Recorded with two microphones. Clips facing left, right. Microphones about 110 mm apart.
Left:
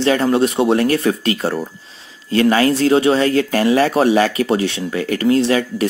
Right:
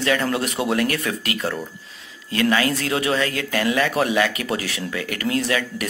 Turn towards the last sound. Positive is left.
turn(degrees=30)  # may be behind; listen again after turning